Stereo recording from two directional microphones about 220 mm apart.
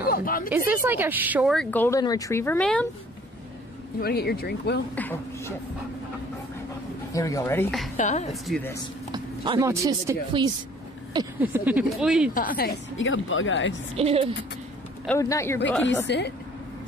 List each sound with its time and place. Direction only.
0.0 s a sound: 40° left (ahead or behind)
0.8 s speech: 10° right (ahead or behind)
4.0 s speech: 45° left (ahead or behind)
4.9 s speech: 10° left (ahead or behind)
7.1 s speech: 15° left (ahead or behind)
8.0 s a woman's voice: 35° left (ahead or behind)
8.3 s speech: centre (ahead or behind)
9.1 s speech: 20° right (ahead or behind)
11.3 s speech: 5° right (ahead or behind)
12.4 s a woman's voice: 40° left (ahead or behind)
12.9 s speech: 60° left (ahead or behind)
13.9 s speech: 25° right (ahead or behind)
15.0 s speech: 15° left (ahead or behind)
16.1 s speech: 50° left (ahead or behind)